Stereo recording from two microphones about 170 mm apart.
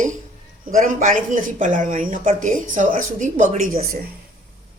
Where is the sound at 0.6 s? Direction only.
50° right (ahead or behind).